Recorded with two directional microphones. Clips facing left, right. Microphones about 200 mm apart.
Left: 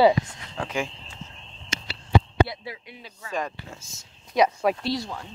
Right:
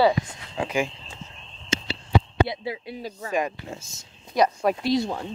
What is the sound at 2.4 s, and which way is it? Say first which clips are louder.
Speech: right 1 dB; 20° right (ahead or behind).